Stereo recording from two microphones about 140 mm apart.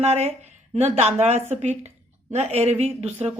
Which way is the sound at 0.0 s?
50° right (ahead or behind).